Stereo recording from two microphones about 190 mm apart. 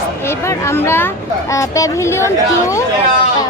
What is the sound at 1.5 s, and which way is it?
A woman's voice, 15° left (ahead or behind).